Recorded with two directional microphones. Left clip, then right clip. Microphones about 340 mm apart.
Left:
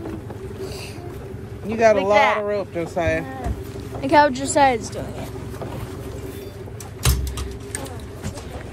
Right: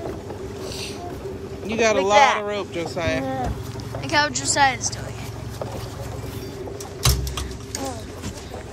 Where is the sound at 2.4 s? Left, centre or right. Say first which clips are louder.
Left 2 dB; centre.